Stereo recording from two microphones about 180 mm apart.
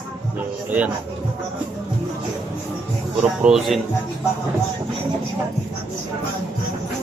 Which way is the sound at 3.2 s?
5° right (ahead or behind).